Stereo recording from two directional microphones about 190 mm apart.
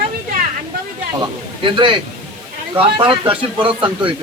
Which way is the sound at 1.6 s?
25° right (ahead or behind).